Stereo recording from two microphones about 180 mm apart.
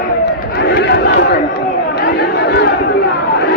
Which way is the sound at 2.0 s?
60° left (ahead or behind).